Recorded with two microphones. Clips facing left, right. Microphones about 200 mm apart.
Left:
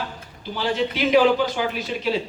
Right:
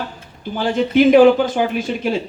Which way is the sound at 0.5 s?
50° right (ahead or behind).